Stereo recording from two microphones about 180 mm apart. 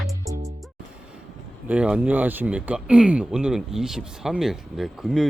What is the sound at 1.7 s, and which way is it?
Speech, 5° right (ahead or behind).